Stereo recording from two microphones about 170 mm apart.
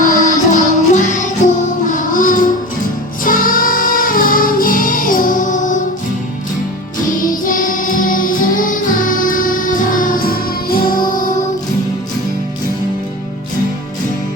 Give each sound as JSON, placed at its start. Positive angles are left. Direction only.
{"t": 0.0, "sound": "music", "side_deg": 50}
{"t": 7.0, "sound": "music", "side_deg": 55}